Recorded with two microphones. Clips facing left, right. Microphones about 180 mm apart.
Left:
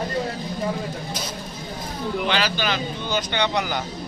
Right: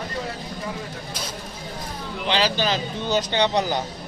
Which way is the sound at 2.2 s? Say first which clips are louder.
Right 3 dB; 30° right (ahead or behind).